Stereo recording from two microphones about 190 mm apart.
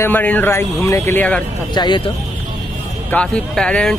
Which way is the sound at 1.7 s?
25° left (ahead or behind).